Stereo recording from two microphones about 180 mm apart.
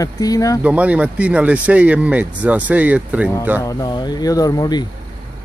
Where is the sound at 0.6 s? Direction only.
10° right (ahead or behind).